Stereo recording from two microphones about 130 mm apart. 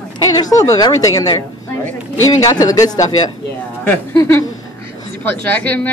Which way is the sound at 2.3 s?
25° left (ahead or behind).